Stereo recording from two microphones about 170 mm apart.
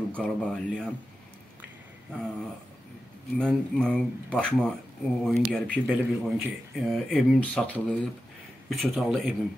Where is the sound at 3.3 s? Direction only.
5° left (ahead or behind).